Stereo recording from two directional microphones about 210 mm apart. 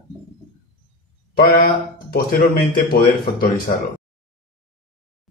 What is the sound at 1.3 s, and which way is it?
A man's voice, 45° left (ahead or behind).